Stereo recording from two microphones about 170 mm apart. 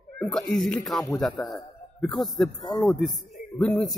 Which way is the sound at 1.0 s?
20° left (ahead or behind).